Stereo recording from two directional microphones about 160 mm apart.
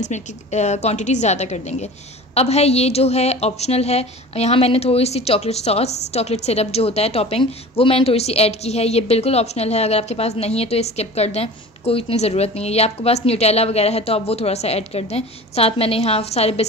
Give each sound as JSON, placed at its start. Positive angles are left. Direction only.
{"t": 0.0, "sound": "a woman's voice", "side_deg": 45}